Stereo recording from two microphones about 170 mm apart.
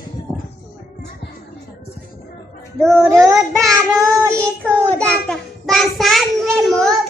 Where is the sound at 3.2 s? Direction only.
20° right (ahead or behind).